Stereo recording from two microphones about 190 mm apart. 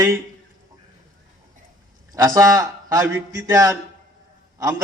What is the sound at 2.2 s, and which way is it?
A man's voice, 15° right (ahead or behind).